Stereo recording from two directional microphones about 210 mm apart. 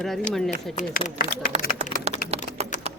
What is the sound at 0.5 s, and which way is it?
Speech, 35° left (ahead or behind).